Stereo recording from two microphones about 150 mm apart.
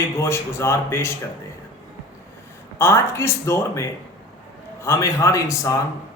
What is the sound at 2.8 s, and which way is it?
A man's voice, 15° left (ahead or behind).